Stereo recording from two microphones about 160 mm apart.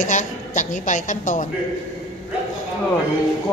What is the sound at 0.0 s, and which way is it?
A woman's voice, 50° left (ahead or behind).